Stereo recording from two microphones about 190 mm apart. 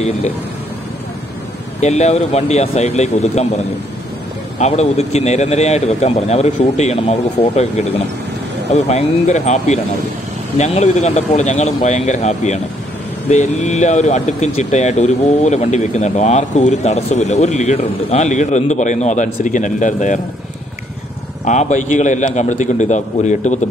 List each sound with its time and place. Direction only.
1.8 s speech: 35° left (ahead or behind)
21.5 s speech: 40° left (ahead or behind)